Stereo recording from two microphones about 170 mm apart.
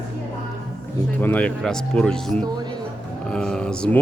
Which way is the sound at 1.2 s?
10° left (ahead or behind).